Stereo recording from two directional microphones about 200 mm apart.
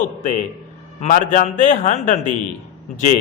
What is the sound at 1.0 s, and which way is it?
A man's voice, 40° left (ahead or behind).